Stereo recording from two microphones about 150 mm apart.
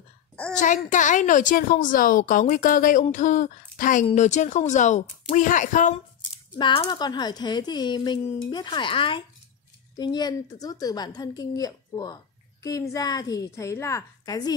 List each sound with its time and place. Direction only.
0.8 s speech: 55° left (ahead or behind)
6.6 s a woman's voice: 35° left (ahead or behind)